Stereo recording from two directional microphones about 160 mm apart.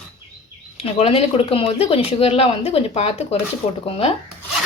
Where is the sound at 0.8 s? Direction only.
40° left (ahead or behind).